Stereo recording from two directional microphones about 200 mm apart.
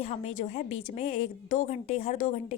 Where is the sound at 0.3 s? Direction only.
40° left (ahead or behind).